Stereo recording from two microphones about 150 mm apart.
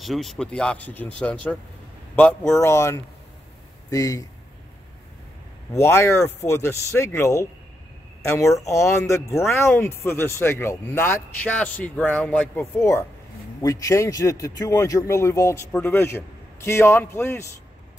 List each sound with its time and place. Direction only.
0.0 s speech: centre (ahead or behind)
2.5 s speech: 20° left (ahead or behind)
5.7 s speech: 15° left (ahead or behind)